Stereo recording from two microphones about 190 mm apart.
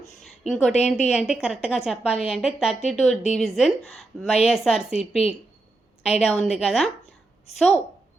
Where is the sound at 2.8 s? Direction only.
35° left (ahead or behind).